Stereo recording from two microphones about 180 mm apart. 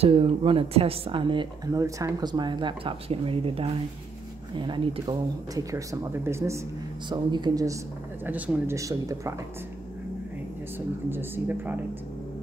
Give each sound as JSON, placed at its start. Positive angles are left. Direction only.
{"t": 0.0, "sound": "speech", "side_deg": -30}
{"t": 7.1, "sound": "speech", "side_deg": -25}
{"t": 8.3, "sound": "speech", "side_deg": -10}
{"t": 11.1, "sound": "speech", "side_deg": -10}